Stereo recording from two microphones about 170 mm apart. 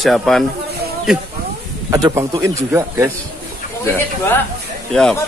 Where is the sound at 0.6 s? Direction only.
70° right (ahead or behind).